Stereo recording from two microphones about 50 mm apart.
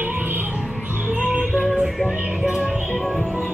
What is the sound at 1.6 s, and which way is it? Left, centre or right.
Music, centre.